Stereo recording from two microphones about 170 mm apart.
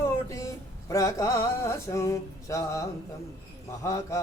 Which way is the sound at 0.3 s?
20° left (ahead or behind).